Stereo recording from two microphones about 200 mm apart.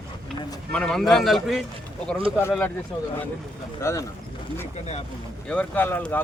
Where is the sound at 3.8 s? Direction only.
15° left (ahead or behind).